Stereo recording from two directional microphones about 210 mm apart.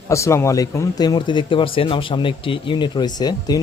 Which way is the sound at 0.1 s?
15° left (ahead or behind).